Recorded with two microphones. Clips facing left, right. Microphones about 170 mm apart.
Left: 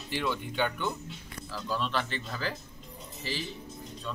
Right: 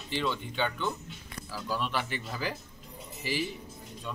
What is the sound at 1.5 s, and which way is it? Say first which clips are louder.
Speech: left 1 dB; 10° right (ahead or behind).